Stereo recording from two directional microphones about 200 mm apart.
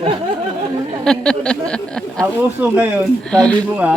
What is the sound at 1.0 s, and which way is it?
Speech, 5° left (ahead or behind).